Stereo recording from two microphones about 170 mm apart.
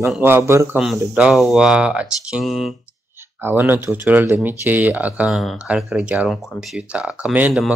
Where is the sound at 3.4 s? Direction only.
10° right (ahead or behind).